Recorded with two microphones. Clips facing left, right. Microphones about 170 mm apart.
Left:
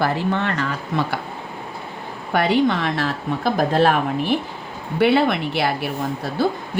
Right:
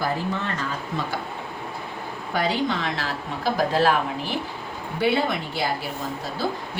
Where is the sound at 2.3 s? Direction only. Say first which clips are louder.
Left 6 dB; 65° left (ahead or behind).